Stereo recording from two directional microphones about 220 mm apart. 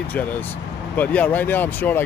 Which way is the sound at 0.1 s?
10° left (ahead or behind).